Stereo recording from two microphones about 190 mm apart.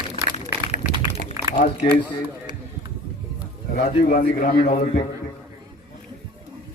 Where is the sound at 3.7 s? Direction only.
45° left (ahead or behind).